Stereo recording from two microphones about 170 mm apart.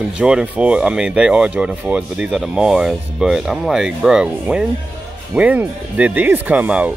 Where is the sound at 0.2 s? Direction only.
5° right (ahead or behind).